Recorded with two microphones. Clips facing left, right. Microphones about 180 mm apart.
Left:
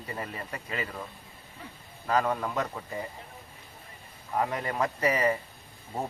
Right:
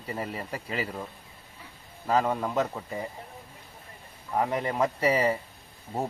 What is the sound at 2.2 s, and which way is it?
Speech, 10° right (ahead or behind).